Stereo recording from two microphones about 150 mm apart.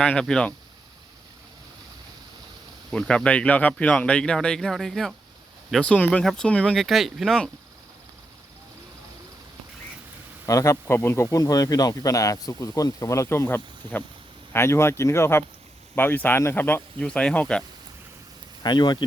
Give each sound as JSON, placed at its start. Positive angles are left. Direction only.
{"t": 0.0, "sound": "speech", "side_deg": 5}
{"t": 2.9, "sound": "speech", "side_deg": 5}
{"t": 10.4, "sound": "speech", "side_deg": 20}
{"t": 18.6, "sound": "speech", "side_deg": 30}